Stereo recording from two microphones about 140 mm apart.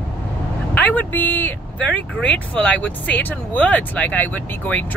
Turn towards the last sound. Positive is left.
turn(degrees=15)  # may be behind; listen again after turning